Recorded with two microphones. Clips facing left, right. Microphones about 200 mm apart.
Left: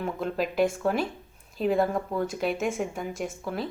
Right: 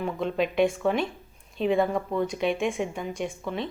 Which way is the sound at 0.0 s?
5° left (ahead or behind).